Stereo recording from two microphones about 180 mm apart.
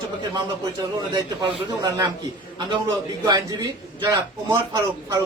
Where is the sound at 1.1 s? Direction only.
20° right (ahead or behind).